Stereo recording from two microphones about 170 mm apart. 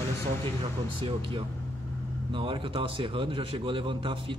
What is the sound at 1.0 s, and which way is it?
A man's voice, 30° right (ahead or behind).